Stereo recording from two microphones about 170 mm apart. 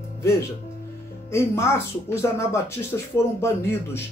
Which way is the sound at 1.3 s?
15° left (ahead or behind).